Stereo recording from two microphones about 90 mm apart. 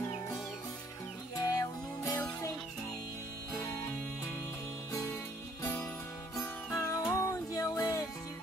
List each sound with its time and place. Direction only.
1.3 s music: 40° left (ahead or behind)
6.8 s music: 40° left (ahead or behind)